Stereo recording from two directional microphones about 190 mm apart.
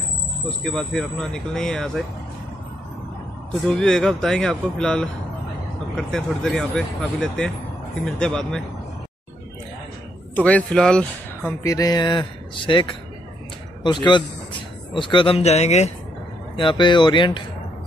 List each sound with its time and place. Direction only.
0.7 s speech: 5° left (ahead or behind)
3.6 s speech: 5° left (ahead or behind)
10.3 s speech: 5° left (ahead or behind)
11.6 s speech: 20° left (ahead or behind); by 15.9 s 35° left (ahead or behind)
16.5 s speech: 25° left (ahead or behind)